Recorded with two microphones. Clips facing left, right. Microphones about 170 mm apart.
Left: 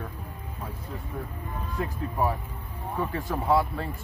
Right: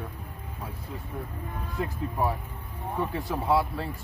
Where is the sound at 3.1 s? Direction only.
5° right (ahead or behind).